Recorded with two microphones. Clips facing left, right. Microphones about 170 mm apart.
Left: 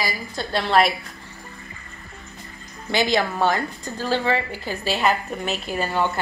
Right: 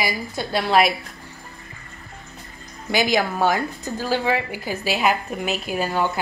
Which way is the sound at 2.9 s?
10° right (ahead or behind).